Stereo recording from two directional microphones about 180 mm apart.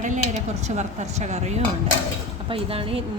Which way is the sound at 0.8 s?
40° right (ahead or behind).